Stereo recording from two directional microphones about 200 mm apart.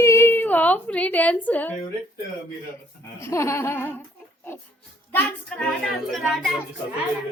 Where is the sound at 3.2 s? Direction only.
15° left (ahead or behind).